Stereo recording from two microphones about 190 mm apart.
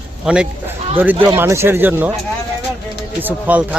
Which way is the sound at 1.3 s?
15° right (ahead or behind).